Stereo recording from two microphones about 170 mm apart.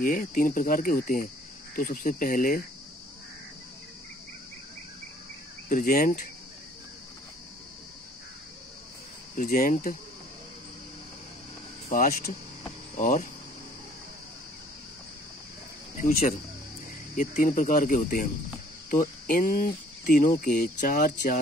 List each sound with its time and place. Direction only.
0.0 s speech: 55° left (ahead or behind)
5.7 s speech: 55° left (ahead or behind)
9.4 s speech: 55° left (ahead or behind)
11.9 s speech: 55° left (ahead or behind)
16.0 s speech: 55° left (ahead or behind)